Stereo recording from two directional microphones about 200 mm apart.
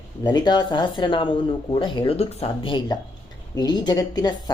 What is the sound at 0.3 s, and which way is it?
Speech, 20° left (ahead or behind).